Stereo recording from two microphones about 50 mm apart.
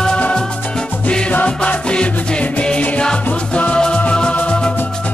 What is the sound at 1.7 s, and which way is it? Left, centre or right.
Music, left.